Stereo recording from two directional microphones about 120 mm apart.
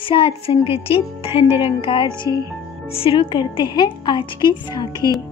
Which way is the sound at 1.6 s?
50° left (ahead or behind).